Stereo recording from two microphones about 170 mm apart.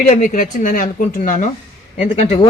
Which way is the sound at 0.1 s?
50° left (ahead or behind).